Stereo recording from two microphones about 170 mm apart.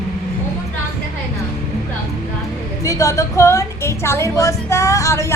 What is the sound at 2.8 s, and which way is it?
A woman's voice, 20° left (ahead or behind).